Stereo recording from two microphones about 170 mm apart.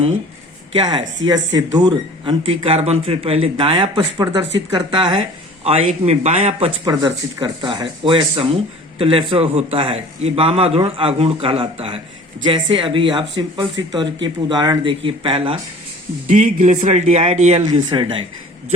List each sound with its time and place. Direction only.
0.7 s a man's voice: 30° right (ahead or behind)
16.2 s speech: 50° right (ahead or behind)
17.7 s speech: 30° right (ahead or behind)